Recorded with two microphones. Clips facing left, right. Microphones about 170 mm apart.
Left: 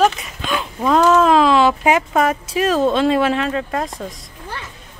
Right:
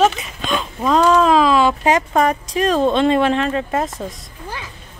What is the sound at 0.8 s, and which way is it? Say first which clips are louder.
Speech: left 1 dB; 10° left (ahead or behind).